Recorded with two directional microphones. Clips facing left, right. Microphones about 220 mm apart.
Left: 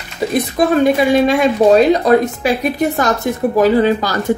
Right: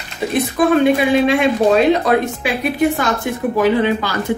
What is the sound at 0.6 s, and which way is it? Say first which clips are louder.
A woman's voice: left 1 dB; 40° left (ahead or behind).